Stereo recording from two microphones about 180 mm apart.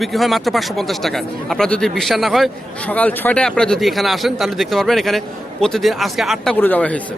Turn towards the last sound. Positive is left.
turn(degrees=10)  # may be behind; listen again after turning